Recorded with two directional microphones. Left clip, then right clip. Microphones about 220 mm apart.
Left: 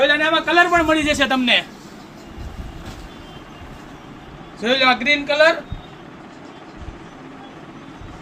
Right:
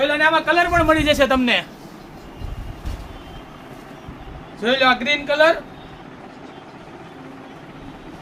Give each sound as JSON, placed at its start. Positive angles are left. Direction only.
{"t": 0.2, "sound": "a man's voice", "side_deg": -30}
{"t": 4.6, "sound": "a man's voice", "side_deg": -15}